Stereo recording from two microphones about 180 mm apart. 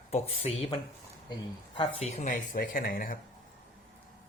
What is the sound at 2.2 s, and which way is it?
Speech, 50° left (ahead or behind).